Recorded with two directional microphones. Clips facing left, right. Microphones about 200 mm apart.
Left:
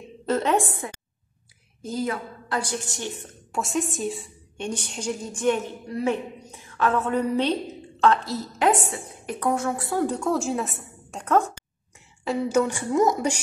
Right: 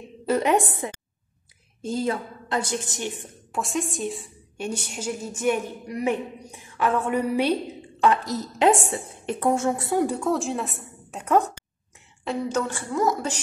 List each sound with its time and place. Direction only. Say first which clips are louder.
0.3 s a woman's voice: right 1 dB; 15° right (ahead or behind)
3.5 s a woman's voice: left 1 dB; centre (ahead or behind); by 10.0 s 20° right (ahead or behind)
10.0 s a woman's voice: even; centre (ahead or behind)
12.3 s a woman's voice: left 4 dB; 10° left (ahead or behind)